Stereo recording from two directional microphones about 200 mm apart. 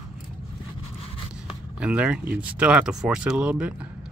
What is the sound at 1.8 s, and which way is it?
Speech, 5° right (ahead or behind).